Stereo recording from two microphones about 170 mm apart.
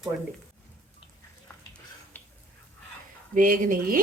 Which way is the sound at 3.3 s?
55° right (ahead or behind).